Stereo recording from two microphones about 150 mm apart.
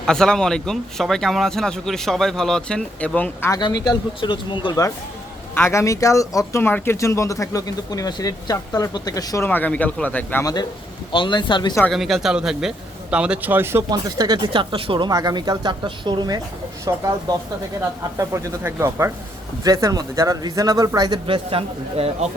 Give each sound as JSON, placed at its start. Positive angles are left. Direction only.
{"t": 0.0, "sound": "speech", "side_deg": 5}
{"t": 3.5, "sound": "speech", "side_deg": 25}
{"t": 5.5, "sound": "speech", "side_deg": 20}
{"t": 10.4, "sound": "speech", "side_deg": 30}
{"t": 11.9, "sound": "speech", "side_deg": 0}
{"t": 18.2, "sound": "speech", "side_deg": -20}